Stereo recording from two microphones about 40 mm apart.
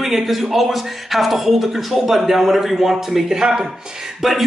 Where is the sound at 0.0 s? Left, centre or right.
Centre.